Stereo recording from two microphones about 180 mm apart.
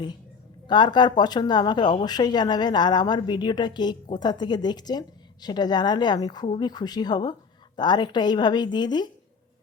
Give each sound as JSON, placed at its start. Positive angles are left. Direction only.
{"t": 0.7, "sound": "speech", "side_deg": 25}